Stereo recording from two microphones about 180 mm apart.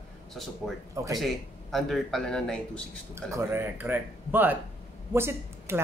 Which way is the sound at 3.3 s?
15° right (ahead or behind).